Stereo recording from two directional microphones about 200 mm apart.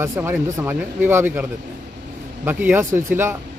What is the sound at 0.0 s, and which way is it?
Speech, 10° right (ahead or behind).